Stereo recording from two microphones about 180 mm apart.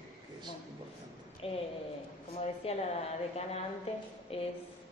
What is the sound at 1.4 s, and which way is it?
Speech, 30° left (ahead or behind).